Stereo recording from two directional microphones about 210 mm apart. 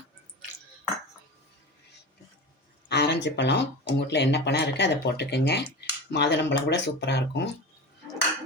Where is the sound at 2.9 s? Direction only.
55° left (ahead or behind).